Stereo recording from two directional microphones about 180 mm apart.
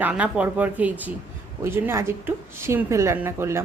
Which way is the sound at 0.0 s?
5° right (ahead or behind).